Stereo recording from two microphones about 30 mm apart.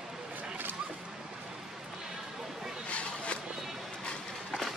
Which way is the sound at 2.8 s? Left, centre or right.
Left.